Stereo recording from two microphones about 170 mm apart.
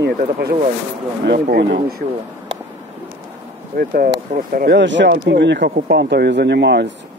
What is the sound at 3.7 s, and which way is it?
Speech, 60° right (ahead or behind).